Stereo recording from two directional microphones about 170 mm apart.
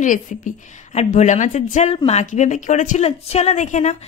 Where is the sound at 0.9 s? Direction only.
45° left (ahead or behind).